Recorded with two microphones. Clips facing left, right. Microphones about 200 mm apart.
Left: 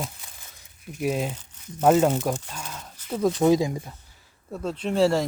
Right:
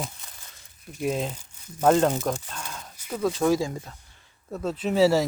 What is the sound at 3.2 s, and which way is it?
Speech, 20° left (ahead or behind).